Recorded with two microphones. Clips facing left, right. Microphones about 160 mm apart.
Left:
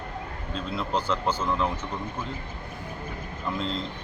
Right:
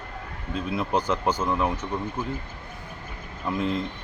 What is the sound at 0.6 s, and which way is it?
A man's voice, 15° right (ahead or behind).